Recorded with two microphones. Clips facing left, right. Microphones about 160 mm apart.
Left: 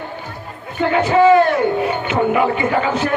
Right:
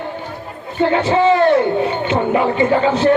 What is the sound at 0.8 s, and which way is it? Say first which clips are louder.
A man's voice: left 1 dB; 30° right (ahead or behind).